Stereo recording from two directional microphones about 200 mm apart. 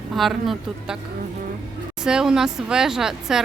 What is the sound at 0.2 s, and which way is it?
Speech, centre (ahead or behind).